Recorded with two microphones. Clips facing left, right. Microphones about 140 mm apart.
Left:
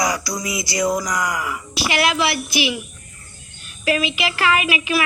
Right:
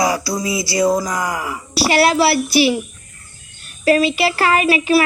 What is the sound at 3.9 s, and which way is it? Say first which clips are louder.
Speech: right 7 dB; 40° right (ahead or behind).